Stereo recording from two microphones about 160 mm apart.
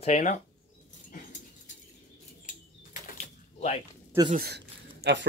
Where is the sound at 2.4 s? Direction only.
55° left (ahead or behind).